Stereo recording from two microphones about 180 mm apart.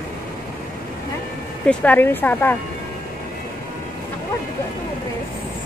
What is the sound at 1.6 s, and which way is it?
Speech, 5° left (ahead or behind).